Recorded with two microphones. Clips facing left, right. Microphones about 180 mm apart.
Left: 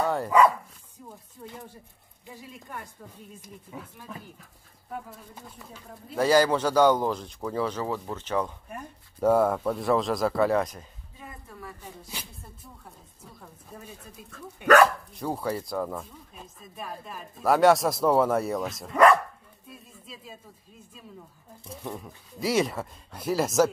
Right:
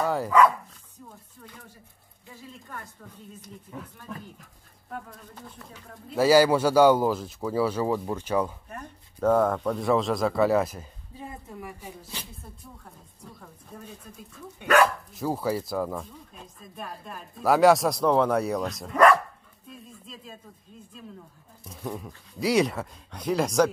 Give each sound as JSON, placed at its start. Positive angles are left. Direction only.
{"t": 0.0, "sound": "dog", "side_deg": 0}
{"t": 1.4, "sound": "speech", "side_deg": 25}
{"t": 6.1, "sound": "speech", "side_deg": -5}
{"t": 8.6, "sound": "speech", "side_deg": 10}
{"t": 11.1, "sound": "a woman's voice", "side_deg": -25}
{"t": 12.8, "sound": "speech", "side_deg": 5}
{"t": 15.1, "sound": "speech", "side_deg": 0}
{"t": 21.8, "sound": "speech", "side_deg": 0}